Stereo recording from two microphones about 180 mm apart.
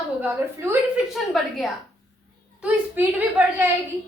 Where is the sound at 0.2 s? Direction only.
10° right (ahead or behind).